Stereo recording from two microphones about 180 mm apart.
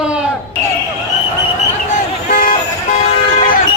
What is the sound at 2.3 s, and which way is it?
Vehicle, 55° left (ahead or behind).